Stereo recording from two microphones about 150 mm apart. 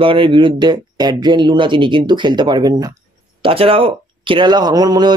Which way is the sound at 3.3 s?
35° right (ahead or behind).